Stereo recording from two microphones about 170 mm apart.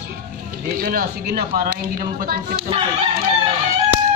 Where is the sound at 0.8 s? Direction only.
60° right (ahead or behind).